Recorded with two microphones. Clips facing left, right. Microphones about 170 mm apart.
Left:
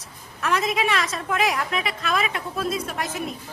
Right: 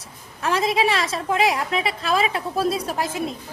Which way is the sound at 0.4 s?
30° right (ahead or behind).